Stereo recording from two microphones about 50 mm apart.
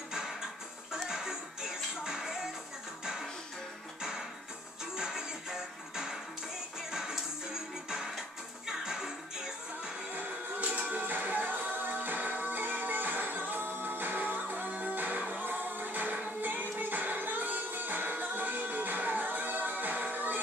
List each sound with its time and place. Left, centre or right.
0.1 s music: centre
4.9 s music: centre
8.6 s music: centre
10.1 s music: right